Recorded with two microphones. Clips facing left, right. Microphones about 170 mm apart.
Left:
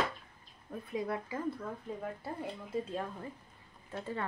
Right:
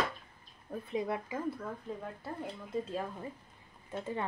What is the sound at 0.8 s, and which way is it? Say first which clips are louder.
Speech: right 1 dB; 25° right (ahead or behind).